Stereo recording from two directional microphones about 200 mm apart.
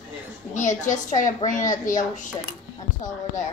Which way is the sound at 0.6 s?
35° left (ahead or behind).